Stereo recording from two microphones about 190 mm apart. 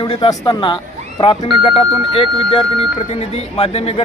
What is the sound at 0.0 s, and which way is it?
Speech, 25° left (ahead or behind).